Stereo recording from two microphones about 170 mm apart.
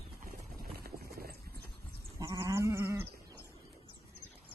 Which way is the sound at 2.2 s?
20° right (ahead or behind).